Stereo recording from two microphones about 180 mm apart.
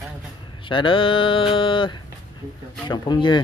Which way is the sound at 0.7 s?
30° left (ahead or behind).